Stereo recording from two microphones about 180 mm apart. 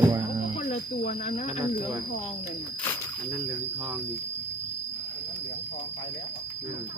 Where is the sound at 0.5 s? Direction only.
40° left (ahead or behind).